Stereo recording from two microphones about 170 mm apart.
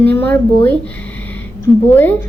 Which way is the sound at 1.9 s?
10° left (ahead or behind).